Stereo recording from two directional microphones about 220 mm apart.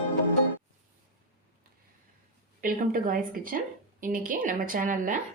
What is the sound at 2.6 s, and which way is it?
Speech, 40° right (ahead or behind).